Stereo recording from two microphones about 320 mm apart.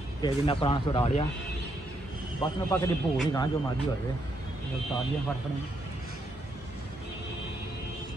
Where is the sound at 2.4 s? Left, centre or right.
Centre.